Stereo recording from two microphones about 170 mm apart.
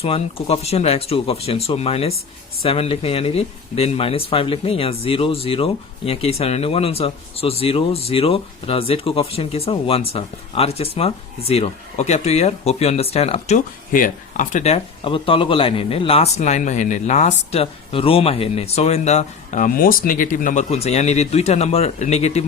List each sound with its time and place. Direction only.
0.0 s speech: 35° left (ahead or behind)
13.9 s speech: 50° left (ahead or behind)